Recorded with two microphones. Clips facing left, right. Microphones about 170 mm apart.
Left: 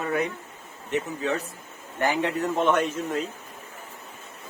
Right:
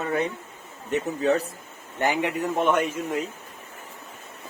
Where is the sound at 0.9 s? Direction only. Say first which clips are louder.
Right 4 dB; 40° right (ahead or behind).